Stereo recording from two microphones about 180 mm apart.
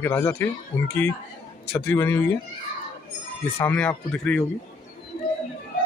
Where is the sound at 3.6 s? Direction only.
10° left (ahead or behind).